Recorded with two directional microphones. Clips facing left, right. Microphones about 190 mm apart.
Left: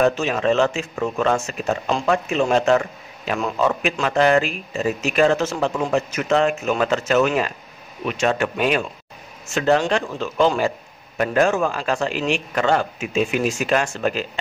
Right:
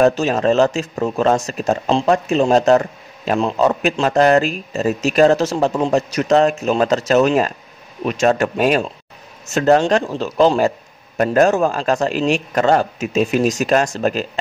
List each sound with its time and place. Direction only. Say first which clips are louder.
0.0 s a man's voice: right 4 dB; 40° right (ahead or behind)